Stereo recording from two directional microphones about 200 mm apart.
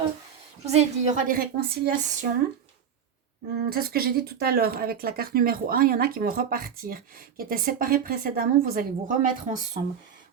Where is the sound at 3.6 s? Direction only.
50° right (ahead or behind).